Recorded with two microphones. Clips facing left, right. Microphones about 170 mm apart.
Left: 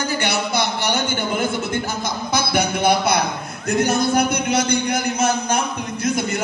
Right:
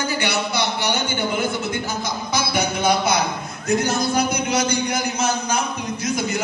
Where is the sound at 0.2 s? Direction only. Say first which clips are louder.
Left 1 dB; 50° left (ahead or behind).